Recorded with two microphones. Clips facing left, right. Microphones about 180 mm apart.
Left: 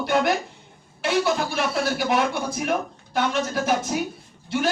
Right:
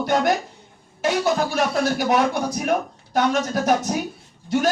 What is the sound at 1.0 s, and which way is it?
Music, 45° right (ahead or behind).